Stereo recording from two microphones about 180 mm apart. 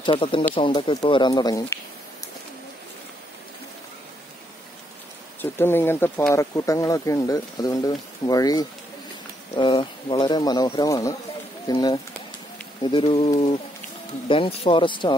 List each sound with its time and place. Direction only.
0.0 s speech: 25° left (ahead or behind)
5.4 s speech: 10° left (ahead or behind); by 15.1 s 25° left (ahead or behind)